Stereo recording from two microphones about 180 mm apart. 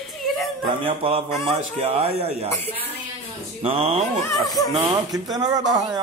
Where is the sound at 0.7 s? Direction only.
30° right (ahead or behind).